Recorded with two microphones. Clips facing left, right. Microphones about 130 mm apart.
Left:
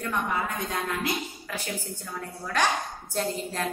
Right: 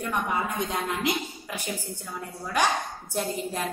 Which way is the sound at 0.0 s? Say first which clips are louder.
Right 1 dB; 20° right (ahead or behind).